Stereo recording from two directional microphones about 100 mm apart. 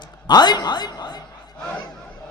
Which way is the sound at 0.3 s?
45° left (ahead or behind).